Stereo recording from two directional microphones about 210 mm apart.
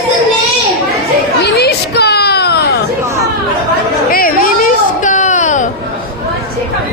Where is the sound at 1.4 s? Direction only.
50° left (ahead or behind).